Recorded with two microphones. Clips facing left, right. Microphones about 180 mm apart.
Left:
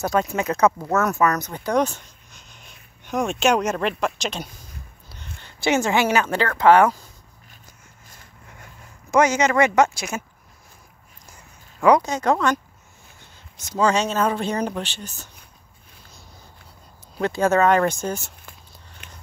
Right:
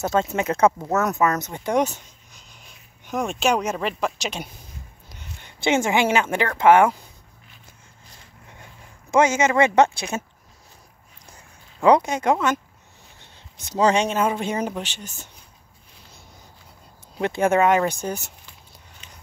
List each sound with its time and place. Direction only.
0.0 s speech: 25° right (ahead or behind)
2.3 s speech: 5° right (ahead or behind); by 7.0 s 20° right (ahead or behind)
9.1 s speech: 25° right (ahead or behind)
11.8 s speech: 25° right (ahead or behind)
12.3 s speech: 5° right (ahead or behind)
13.7 s speech: 20° right (ahead or behind)
17.2 s speech: 20° right (ahead or behind)
19.0 s a sound: 60° left (ahead or behind)